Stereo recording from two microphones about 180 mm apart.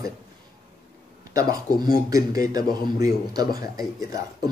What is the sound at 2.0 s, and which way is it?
A man's voice, 20° right (ahead or behind).